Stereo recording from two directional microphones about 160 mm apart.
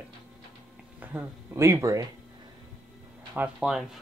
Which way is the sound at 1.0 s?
10° right (ahead or behind).